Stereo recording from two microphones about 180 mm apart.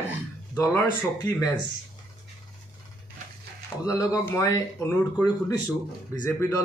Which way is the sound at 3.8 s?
20° left (ahead or behind).